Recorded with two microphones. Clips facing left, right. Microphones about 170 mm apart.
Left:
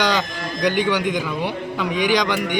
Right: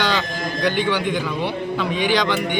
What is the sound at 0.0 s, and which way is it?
Speech, 15° left (ahead or behind).